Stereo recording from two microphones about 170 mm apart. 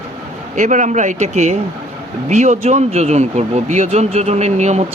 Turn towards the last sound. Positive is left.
turn(degrees=-40)  # may be behind; listen again after turning